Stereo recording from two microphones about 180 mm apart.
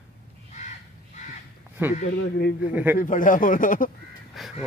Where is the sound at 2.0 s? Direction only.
55° left (ahead or behind).